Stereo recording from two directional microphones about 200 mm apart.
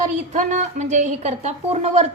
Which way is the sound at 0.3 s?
40° right (ahead or behind).